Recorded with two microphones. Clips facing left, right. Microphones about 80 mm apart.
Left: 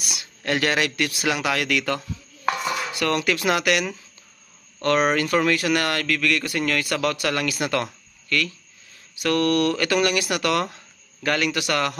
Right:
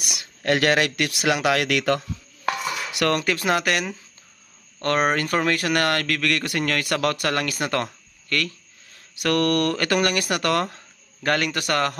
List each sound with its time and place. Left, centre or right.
0.2 s speech: right
2.0 s chopping: centre
3.1 s speech: right
4.8 s speech: right
7.6 s a sound: right
8.9 s speech: right